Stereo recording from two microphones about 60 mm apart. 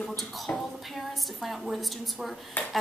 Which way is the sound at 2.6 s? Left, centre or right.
Left.